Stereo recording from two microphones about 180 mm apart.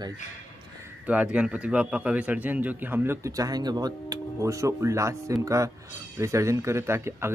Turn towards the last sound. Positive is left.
turn(degrees=-15)  # may be behind; listen again after turning